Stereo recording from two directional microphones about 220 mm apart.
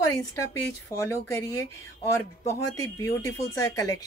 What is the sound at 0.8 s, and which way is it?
Speech, 10° left (ahead or behind).